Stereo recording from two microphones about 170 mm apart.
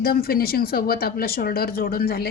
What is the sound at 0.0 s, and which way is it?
Speech, 65° left (ahead or behind).